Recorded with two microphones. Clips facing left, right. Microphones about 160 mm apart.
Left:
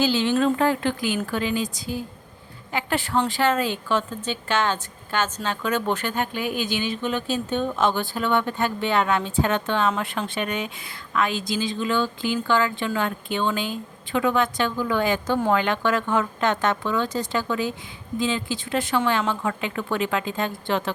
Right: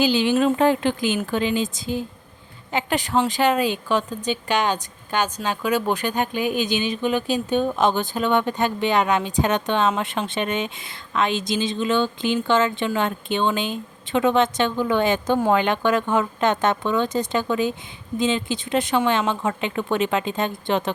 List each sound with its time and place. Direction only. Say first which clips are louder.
0.0 s a woman's voice: right 2 dB; 15° right (ahead or behind)